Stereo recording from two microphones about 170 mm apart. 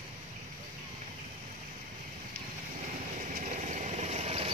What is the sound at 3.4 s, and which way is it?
Vehicle, 45° right (ahead or behind).